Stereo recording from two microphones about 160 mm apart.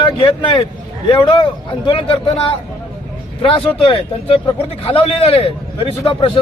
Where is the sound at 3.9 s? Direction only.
35° left (ahead or behind).